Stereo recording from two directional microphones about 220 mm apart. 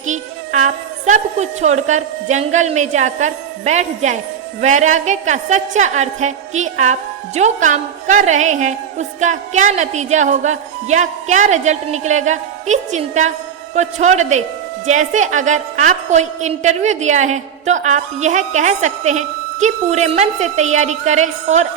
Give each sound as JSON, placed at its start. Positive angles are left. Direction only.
{"t": 0.0, "sound": "a woman's voice", "side_deg": -35}